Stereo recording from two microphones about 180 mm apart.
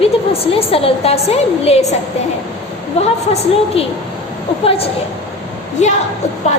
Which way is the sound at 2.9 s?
35° left (ahead or behind).